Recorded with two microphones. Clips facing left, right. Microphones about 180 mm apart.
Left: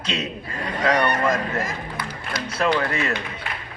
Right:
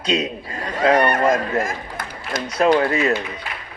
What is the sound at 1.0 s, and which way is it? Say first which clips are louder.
Speech: right 4 dB; 50° right (ahead or behind).